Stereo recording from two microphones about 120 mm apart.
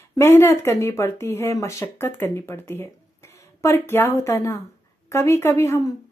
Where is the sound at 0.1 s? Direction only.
20° left (ahead or behind).